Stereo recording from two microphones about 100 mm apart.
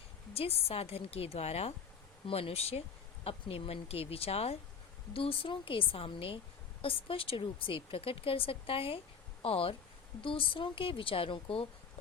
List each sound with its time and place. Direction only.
0.3 s a woman's voice: 75° left (ahead or behind)
2.2 s a woman's voice: 75° left (ahead or behind)
3.2 s a woman's voice: 75° left (ahead or behind)
5.1 s speech: 70° left (ahead or behind)